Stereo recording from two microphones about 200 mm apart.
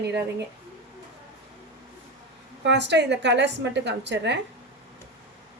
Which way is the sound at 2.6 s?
60° right (ahead or behind).